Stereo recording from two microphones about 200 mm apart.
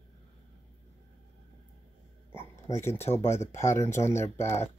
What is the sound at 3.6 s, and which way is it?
Speech, 15° left (ahead or behind).